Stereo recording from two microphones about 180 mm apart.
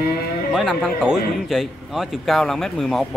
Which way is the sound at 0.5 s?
Centre (ahead or behind).